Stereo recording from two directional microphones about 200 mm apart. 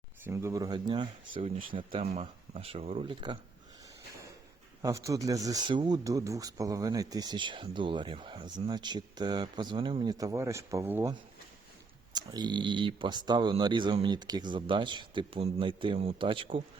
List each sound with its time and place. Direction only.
0.3 s speech: 15° right (ahead or behind)
4.8 s speech: 15° right (ahead or behind)
12.1 s speech: 20° right (ahead or behind)